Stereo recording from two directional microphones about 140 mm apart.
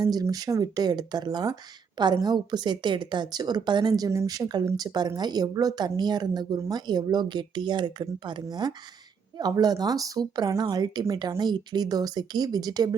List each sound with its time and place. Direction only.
0.0 s a woman's voice: 30° right (ahead or behind)